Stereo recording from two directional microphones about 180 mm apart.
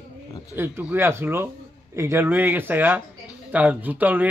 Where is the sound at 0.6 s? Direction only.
10° right (ahead or behind).